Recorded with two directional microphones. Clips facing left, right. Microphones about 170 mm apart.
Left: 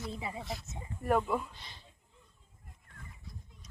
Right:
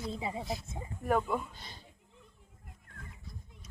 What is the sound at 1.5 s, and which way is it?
Speech, 45° right (ahead or behind).